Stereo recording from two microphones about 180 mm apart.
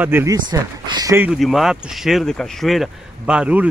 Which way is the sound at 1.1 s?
5° right (ahead or behind).